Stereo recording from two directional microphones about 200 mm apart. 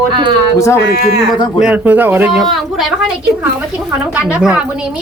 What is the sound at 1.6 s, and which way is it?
A woman's voice, 5° right (ahead or behind).